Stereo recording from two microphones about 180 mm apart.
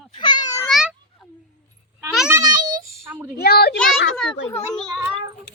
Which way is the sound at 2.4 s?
20° right (ahead or behind).